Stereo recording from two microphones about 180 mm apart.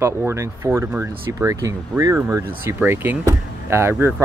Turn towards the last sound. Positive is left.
turn(degrees=-10)  # may be behind; listen again after turning